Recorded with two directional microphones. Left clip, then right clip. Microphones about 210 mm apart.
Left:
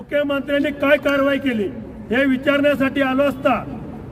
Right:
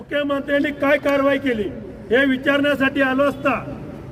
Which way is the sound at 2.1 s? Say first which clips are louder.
Right 1 dB; 40° left (ahead or behind).